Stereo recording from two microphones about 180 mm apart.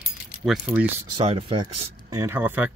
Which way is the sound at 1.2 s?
30° right (ahead or behind).